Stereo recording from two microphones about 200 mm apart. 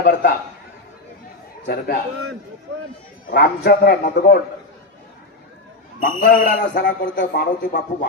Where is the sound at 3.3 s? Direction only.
50° left (ahead or behind).